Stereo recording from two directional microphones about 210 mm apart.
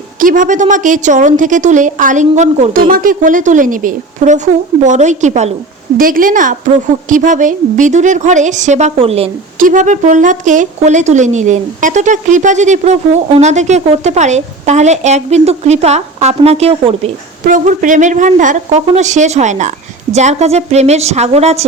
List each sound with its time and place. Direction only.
0.2 s a woman's voice: 40° right (ahead or behind)
9.6 s a woman's voice: 40° right (ahead or behind)